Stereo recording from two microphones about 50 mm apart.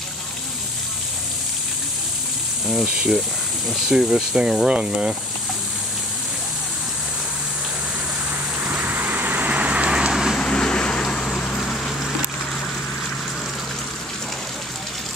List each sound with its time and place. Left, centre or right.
2.7 s speech: right
8.6 s vehicle: right
10.4 s vehicle: centre